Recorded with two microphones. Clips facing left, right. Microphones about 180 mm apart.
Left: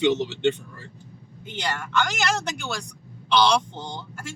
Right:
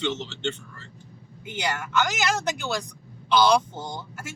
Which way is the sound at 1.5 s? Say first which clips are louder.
Right 1 dB; 10° right (ahead or behind).